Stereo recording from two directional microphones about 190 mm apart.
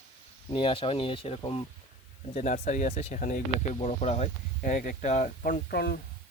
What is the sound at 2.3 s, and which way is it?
Speech, 40° left (ahead or behind).